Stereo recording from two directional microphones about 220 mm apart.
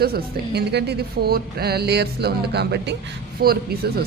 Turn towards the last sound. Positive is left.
turn(degrees=-45)  # may be behind; listen again after turning